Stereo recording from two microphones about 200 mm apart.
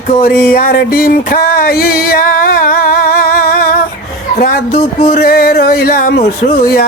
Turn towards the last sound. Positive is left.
turn(degrees=50)  # may be behind; listen again after turning